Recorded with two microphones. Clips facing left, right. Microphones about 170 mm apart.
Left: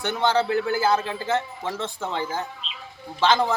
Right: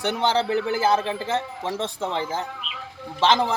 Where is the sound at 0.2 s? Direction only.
30° right (ahead or behind).